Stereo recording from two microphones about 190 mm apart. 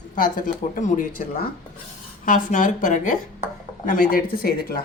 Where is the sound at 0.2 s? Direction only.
45° left (ahead or behind).